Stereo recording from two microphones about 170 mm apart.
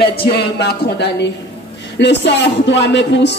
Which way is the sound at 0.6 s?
75° left (ahead or behind).